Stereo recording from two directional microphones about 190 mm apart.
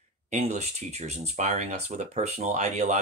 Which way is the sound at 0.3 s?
35° right (ahead or behind).